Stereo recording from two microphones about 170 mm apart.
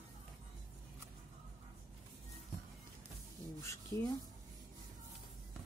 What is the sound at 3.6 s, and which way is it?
Speech, 15° left (ahead or behind).